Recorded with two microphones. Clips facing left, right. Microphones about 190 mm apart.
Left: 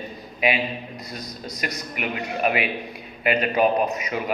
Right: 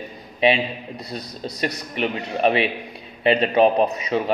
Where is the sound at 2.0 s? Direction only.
30° right (ahead or behind).